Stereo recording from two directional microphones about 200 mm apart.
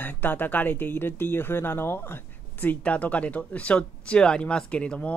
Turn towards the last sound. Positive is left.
turn(degrees=5)  # may be behind; listen again after turning